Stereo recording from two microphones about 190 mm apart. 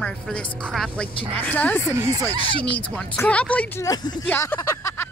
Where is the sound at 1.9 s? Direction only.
15° right (ahead or behind).